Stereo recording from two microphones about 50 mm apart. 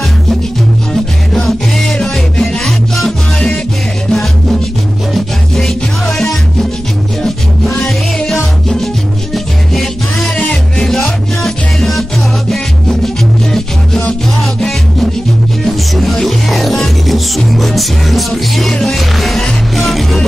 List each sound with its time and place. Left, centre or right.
1.3 s music: centre
2.4 s music: centre
5.6 s music: centre
13.0 s music: centre
15.6 s music: centre